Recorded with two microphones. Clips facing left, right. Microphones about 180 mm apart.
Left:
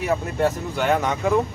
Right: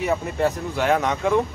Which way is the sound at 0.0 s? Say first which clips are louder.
Even; centre (ahead or behind).